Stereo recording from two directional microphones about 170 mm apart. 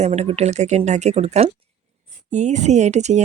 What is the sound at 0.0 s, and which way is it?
A woman's voice, 40° right (ahead or behind).